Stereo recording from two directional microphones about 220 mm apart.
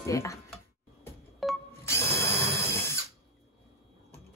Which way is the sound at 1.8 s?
10° left (ahead or behind).